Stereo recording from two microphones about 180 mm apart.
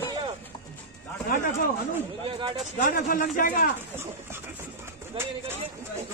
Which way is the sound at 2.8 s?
50° left (ahead or behind).